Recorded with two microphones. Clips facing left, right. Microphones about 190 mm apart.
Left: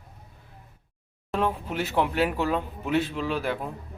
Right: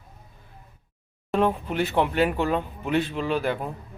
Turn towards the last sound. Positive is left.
turn(degrees=0)  # may be behind; listen again after turning